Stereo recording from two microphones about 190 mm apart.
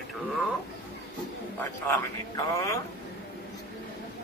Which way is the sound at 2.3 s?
15° left (ahead or behind).